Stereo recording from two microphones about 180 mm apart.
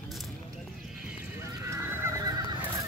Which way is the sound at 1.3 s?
15° right (ahead or behind).